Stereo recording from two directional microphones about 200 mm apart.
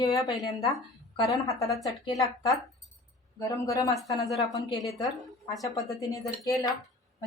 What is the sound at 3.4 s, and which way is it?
Speech, 15° left (ahead or behind).